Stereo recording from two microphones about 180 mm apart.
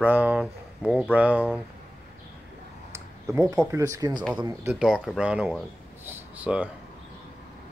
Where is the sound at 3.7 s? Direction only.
20° right (ahead or behind).